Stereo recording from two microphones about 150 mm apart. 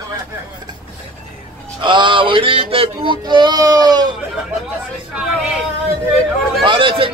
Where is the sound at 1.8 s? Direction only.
35° right (ahead or behind).